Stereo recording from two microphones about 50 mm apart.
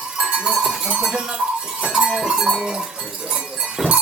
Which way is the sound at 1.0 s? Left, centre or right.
Centre.